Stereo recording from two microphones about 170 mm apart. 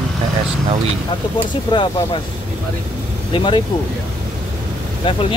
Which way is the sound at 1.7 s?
30° left (ahead or behind).